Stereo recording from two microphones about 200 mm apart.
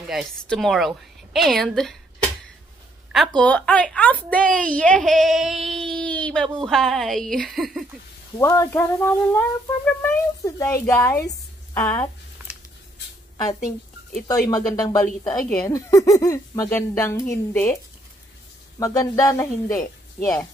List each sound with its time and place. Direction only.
0.1 s a woman's voice: centre (ahead or behind)
3.1 s a woman's voice: centre (ahead or behind)
8.4 s speech: 15° left (ahead or behind)
13.6 s speech: 45° left (ahead or behind)
14.5 s speech: 20° left (ahead or behind)
18.8 s speech: 15° left (ahead or behind)